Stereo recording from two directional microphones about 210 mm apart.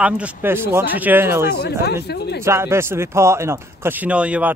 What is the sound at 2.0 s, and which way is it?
Speech, 50° left (ahead or behind).